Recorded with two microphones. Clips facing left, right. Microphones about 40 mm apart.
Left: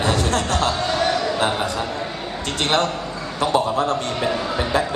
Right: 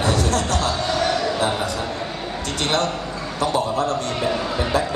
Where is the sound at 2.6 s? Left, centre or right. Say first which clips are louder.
Left 2 dB; left.